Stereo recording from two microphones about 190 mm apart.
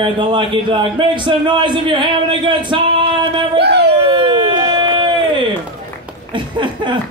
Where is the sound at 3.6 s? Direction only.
60° right (ahead or behind).